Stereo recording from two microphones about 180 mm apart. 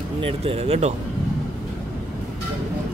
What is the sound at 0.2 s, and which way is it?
Speech, 30° right (ahead or behind).